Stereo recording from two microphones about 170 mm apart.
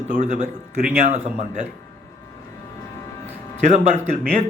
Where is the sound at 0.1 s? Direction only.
50° right (ahead or behind).